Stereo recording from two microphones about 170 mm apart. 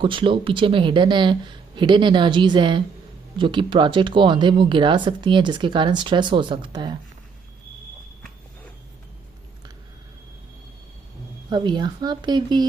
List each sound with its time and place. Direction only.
0.0 s speech: 30° right (ahead or behind)
11.4 s speech: 25° right (ahead or behind)